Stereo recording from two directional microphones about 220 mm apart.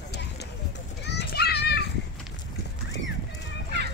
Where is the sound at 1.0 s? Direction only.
50° left (ahead or behind).